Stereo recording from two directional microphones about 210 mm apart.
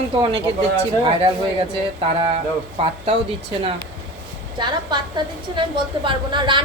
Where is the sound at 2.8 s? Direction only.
25° right (ahead or behind).